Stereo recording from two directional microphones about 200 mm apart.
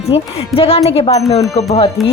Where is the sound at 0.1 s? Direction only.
30° left (ahead or behind).